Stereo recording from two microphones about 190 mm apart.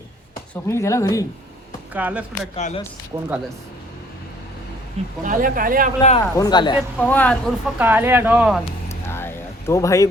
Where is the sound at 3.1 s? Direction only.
20° right (ahead or behind).